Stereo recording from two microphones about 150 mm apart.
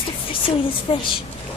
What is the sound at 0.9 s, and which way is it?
Speech, 40° left (ahead or behind).